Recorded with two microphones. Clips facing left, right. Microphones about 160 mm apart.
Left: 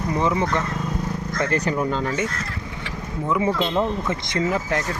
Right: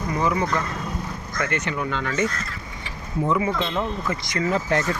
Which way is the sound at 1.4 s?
35° left (ahead or behind).